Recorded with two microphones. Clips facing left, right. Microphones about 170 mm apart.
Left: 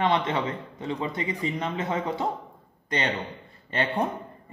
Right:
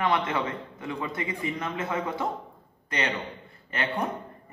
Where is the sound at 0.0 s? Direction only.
25° left (ahead or behind).